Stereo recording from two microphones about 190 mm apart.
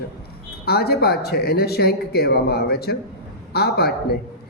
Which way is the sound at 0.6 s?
55° left (ahead or behind).